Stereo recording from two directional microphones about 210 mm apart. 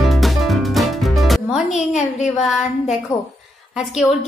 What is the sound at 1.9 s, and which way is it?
Speech, 35° left (ahead or behind).